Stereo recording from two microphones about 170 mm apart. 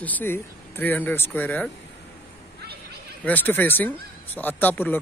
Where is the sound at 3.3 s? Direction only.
10° left (ahead or behind).